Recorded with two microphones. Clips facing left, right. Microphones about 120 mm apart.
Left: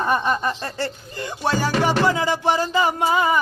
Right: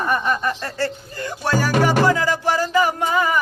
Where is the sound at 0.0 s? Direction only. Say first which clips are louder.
Even; 20° left (ahead or behind).